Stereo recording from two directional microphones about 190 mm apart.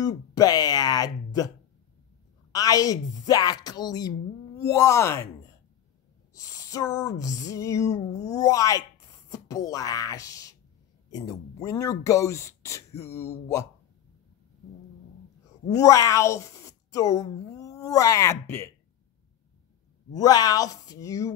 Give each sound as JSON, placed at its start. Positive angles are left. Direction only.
{"t": 0.0, "sound": "a sound", "side_deg": 20}
{"t": 2.5, "sound": "speech", "side_deg": 20}
{"t": 6.3, "sound": "speech", "side_deg": 15}
{"t": 15.7, "sound": "speech", "side_deg": 15}
{"t": 20.1, "sound": "speech", "side_deg": 20}